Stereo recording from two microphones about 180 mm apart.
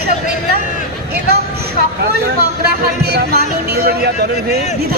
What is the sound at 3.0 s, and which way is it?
Speech, 65° right (ahead or behind).